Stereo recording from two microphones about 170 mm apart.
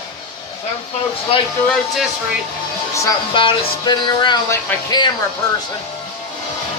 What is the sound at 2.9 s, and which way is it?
Music, 25° left (ahead or behind).